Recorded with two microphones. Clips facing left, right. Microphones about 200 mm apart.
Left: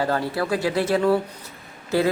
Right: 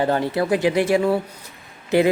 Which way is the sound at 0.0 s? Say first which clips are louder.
Right 3 dB; 20° right (ahead or behind).